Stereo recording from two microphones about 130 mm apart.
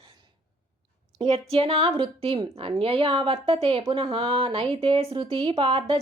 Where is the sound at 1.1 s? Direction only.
50° right (ahead or behind).